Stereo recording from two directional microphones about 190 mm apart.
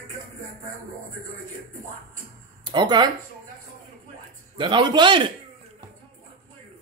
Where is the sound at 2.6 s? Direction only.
20° right (ahead or behind).